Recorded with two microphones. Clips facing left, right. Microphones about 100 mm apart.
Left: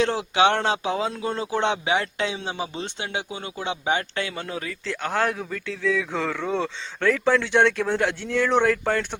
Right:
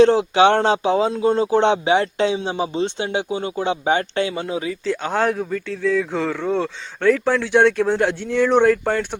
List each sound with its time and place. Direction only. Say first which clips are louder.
0.0 s speech: right 7 dB; 30° right (ahead or behind); by 9.0 s 10° right (ahead or behind)